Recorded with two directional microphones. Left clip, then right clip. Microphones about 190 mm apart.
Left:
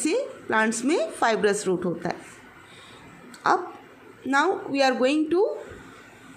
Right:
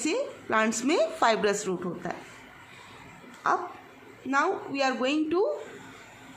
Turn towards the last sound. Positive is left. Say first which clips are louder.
# left 4 dB
turn(degrees=5)  # may be behind; listen again after turning